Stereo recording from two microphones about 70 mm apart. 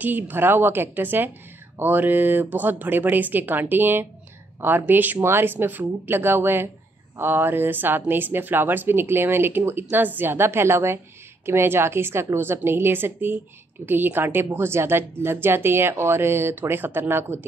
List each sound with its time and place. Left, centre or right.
0.0 s speech: right